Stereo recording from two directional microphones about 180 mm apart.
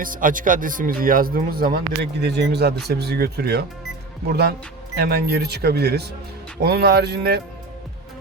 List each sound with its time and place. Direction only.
0.0 s speech: 50° right (ahead or behind)